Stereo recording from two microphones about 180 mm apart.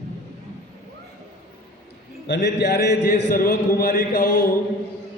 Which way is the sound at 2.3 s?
70° left (ahead or behind).